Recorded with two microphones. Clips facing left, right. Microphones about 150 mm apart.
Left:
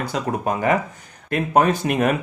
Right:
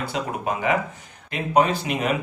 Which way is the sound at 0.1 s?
45° left (ahead or behind).